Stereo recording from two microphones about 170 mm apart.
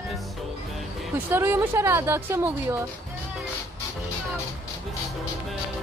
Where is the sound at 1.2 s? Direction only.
15° right (ahead or behind).